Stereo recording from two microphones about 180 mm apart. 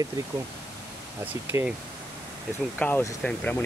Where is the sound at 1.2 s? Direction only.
10° right (ahead or behind).